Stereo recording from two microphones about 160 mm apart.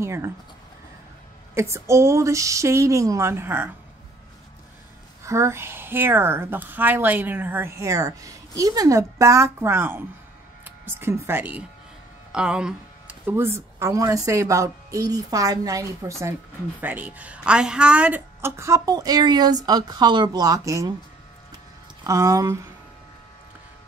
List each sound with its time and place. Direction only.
0.0 s a woman's voice: 15° right (ahead or behind)
1.5 s a woman's voice: 15° right (ahead or behind)
5.2 s a woman's voice: 15° right (ahead or behind)
22.0 s a woman's voice: 20° right (ahead or behind)